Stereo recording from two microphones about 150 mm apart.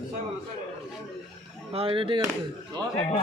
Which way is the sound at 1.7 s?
40° right (ahead or behind).